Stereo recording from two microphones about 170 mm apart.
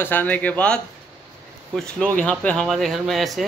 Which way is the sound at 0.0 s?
10° left (ahead or behind).